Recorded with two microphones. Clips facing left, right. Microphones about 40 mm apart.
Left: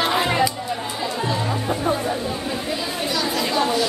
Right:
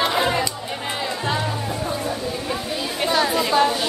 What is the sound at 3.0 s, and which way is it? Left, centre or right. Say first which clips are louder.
Chatter: right 6 dB; right.